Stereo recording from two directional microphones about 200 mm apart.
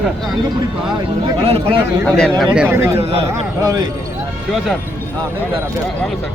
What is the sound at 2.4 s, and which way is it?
Speech, 5° right (ahead or behind).